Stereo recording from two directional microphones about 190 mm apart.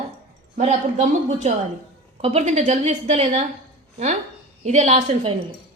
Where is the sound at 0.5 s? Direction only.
40° right (ahead or behind).